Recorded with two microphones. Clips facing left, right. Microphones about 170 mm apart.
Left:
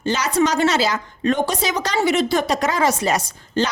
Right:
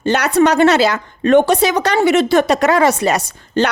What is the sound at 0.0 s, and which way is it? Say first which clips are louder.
A woman's voice: right 6 dB; 65° right (ahead or behind).